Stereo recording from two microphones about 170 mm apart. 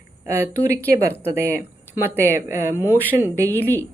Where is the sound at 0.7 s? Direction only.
15° right (ahead or behind).